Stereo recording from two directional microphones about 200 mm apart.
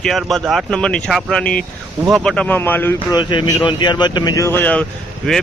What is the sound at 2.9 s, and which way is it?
Speech, 25° left (ahead or behind).